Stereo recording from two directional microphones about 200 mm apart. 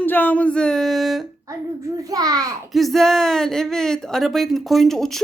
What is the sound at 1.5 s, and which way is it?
A child's voice, 15° right (ahead or behind).